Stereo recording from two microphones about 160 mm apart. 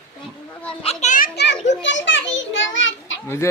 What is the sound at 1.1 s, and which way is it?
Children playing, 75° left (ahead or behind).